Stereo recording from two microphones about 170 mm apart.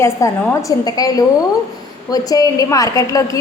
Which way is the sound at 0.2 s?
15° left (ahead or behind).